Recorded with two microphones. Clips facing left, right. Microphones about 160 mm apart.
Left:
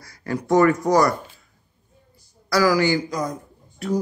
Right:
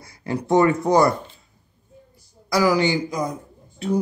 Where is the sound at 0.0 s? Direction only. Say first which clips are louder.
Right 1 dB; 25° right (ahead or behind).